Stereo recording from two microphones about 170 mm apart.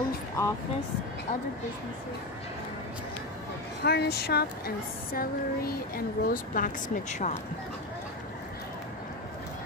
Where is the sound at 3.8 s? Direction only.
75° left (ahead or behind); by 7.3 s 45° left (ahead or behind).